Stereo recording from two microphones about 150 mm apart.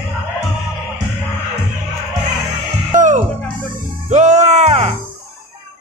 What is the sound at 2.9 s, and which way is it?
Music, 55° right (ahead or behind).